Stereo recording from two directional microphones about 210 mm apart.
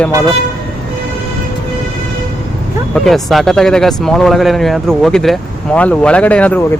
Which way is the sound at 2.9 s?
Centre (ahead or behind).